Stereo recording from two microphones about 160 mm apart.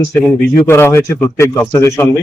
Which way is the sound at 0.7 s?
15° left (ahead or behind).